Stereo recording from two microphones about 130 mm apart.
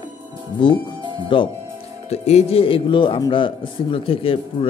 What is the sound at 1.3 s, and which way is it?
Speech, 40° left (ahead or behind).